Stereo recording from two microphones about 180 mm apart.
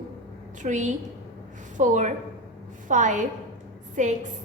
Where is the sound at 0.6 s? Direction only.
40° right (ahead or behind).